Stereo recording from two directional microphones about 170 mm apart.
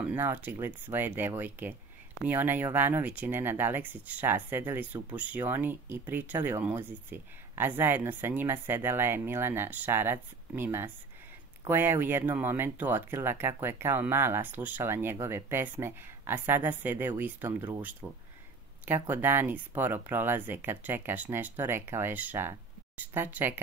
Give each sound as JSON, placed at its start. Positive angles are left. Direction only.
{"t": 0.0, "sound": "speech", "side_deg": -10}